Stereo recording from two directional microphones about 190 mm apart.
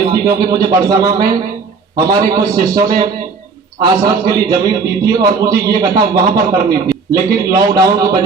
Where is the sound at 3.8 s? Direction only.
20° right (ahead or behind).